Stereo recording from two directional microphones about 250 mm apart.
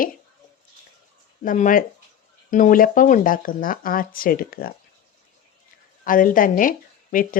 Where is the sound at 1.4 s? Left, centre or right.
Left.